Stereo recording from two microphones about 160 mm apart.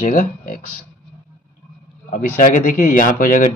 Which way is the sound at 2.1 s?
55° left (ahead or behind).